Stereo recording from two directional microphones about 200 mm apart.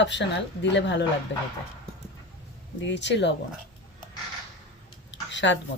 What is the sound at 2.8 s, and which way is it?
Speech, 60° left (ahead or behind).